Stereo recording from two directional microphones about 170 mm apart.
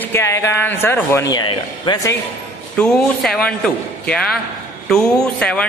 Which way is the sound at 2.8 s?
5° left (ahead or behind).